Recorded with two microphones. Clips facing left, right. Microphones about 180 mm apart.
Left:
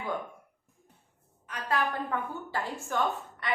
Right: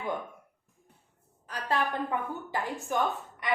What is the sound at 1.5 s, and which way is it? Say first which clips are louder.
Speech: even; 25° right (ahead or behind).